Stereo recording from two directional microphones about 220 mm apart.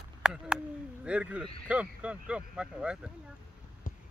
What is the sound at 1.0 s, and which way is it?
A man's voice, 5° right (ahead or behind).